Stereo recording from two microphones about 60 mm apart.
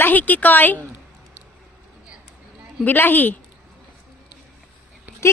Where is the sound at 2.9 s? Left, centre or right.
Left.